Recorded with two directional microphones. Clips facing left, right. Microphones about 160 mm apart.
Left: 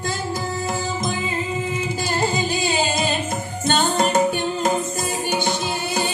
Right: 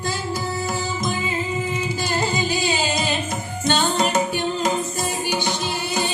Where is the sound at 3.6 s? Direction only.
50° left (ahead or behind).